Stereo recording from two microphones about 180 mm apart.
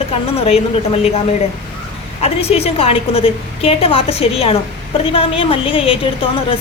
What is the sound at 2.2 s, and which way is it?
A woman's voice, 35° left (ahead or behind).